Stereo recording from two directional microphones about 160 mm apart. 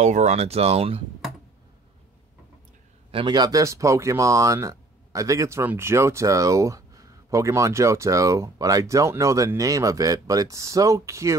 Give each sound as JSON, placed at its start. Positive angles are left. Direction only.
{"t": 0.0, "sound": "speech", "side_deg": -45}
{"t": 3.1, "sound": "speech", "side_deg": -30}